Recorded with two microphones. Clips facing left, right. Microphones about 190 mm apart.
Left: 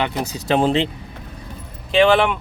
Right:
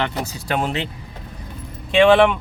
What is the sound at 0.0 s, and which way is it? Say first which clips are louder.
Speech: left 2 dB; 15° left (ahead or behind).